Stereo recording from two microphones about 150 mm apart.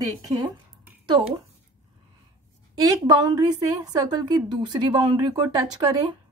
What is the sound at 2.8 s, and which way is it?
Speech, 25° right (ahead or behind).